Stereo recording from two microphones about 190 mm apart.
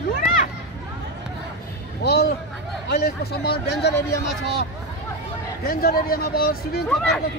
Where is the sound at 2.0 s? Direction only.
60° left (ahead or behind).